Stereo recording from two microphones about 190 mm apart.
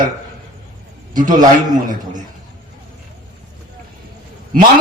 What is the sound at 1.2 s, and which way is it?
Speech, 45° right (ahead or behind).